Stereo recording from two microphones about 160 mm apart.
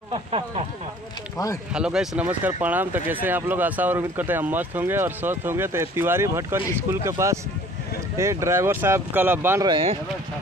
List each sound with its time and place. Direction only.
0.1 s speech: 40° right (ahead or behind)
1.7 s speech: 5° right (ahead or behind)
9.7 s speech: 35° right (ahead or behind)